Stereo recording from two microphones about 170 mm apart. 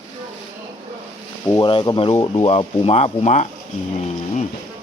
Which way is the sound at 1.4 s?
25° left (ahead or behind).